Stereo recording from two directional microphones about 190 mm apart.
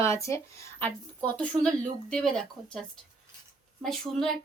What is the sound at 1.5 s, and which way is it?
Speech, 20° right (ahead or behind).